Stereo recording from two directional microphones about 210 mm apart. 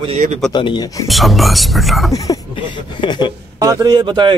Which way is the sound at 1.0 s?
Centre (ahead or behind).